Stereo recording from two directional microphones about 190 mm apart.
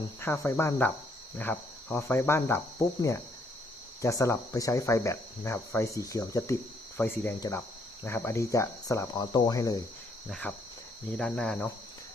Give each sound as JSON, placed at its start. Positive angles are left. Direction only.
{"t": 0.2, "sound": "speech", "side_deg": 15}
{"t": 4.0, "sound": "speech", "side_deg": 15}
{"t": 10.2, "sound": "cricket", "side_deg": 5}